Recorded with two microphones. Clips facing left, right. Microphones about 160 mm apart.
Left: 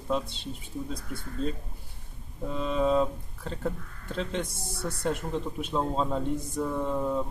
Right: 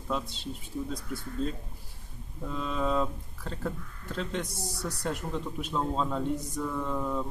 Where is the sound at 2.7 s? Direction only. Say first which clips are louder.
Left 5 dB; 15° left (ahead or behind).